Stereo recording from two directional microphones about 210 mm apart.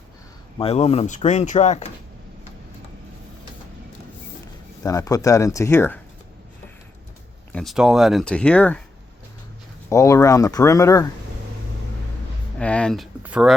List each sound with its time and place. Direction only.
0.6 s speech: 30° left (ahead or behind)
4.8 s speech: 15° left (ahead or behind)
7.5 s speech: centre (ahead or behind)
9.9 s speech: 15° left (ahead or behind)
12.5 s speech: 5° left (ahead or behind)